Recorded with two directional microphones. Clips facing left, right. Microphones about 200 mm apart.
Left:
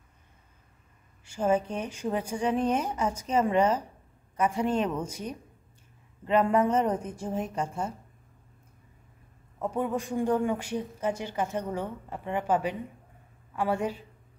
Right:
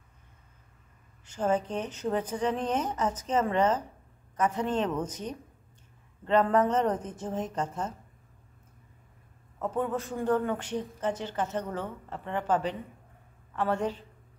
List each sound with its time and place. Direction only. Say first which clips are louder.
1.2 s a woman's voice: left 2 dB; 10° left (ahead or behind)
9.6 s a woman's voice: left 1 dB; 10° left (ahead or behind)